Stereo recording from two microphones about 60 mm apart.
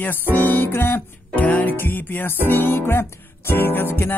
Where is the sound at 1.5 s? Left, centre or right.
Left.